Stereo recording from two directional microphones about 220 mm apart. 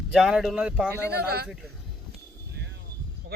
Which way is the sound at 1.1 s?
45° right (ahead or behind).